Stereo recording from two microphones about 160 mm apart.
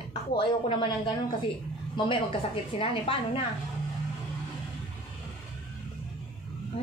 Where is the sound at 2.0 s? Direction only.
30° left (ahead or behind).